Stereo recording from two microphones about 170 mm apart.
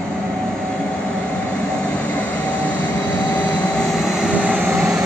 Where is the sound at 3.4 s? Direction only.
5° left (ahead or behind).